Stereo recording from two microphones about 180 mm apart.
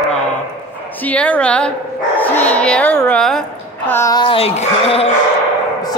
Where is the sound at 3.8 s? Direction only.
15° left (ahead or behind); by 5.0 s 35° left (ahead or behind).